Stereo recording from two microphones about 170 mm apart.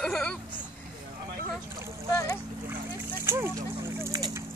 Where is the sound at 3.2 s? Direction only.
15° right (ahead or behind).